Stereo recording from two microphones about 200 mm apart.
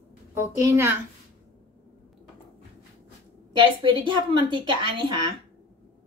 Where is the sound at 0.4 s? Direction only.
15° right (ahead or behind).